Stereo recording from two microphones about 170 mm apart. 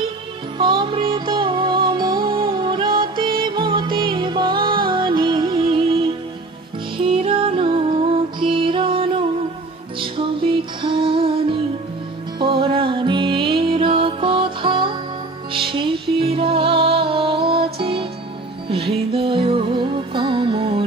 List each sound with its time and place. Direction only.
0.6 s music: 30° right (ahead or behind)
19.1 s music: 30° right (ahead or behind)